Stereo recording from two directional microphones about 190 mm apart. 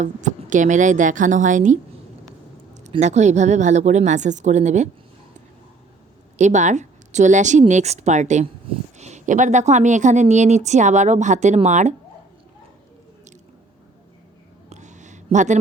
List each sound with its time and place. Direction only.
0.0 s speech: 40° right (ahead or behind)
2.9 s speech: 35° right (ahead or behind)
6.3 s speech: 40° right (ahead or behind)
14.7 s a sound: 40° right (ahead or behind)